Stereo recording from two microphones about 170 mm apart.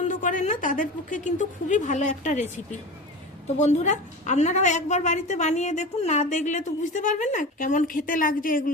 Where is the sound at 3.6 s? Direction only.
40° left (ahead or behind).